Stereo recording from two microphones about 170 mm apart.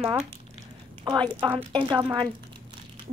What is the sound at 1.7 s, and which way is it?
Speech, 30° right (ahead or behind).